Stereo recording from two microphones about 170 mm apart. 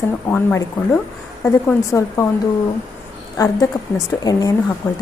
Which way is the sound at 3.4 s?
20° left (ahead or behind).